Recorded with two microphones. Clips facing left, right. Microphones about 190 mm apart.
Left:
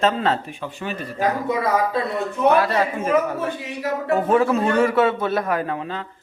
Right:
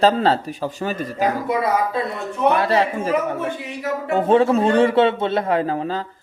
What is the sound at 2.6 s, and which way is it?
A man's voice, 30° right (ahead or behind).